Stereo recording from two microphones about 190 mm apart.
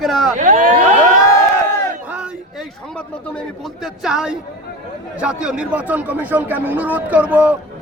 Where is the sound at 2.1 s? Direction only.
5° right (ahead or behind).